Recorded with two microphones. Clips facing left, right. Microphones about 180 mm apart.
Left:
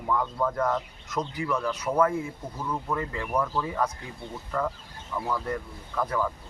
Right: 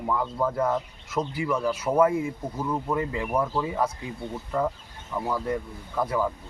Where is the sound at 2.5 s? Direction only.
20° right (ahead or behind).